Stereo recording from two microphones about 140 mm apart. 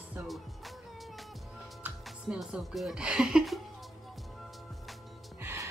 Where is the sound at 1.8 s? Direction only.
5° right (ahead or behind).